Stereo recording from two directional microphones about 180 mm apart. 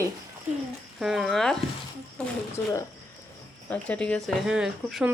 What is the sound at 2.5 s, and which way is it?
Speech, 15° left (ahead or behind).